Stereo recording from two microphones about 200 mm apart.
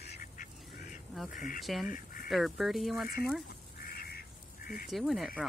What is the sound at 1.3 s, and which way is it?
Speech, 40° left (ahead or behind).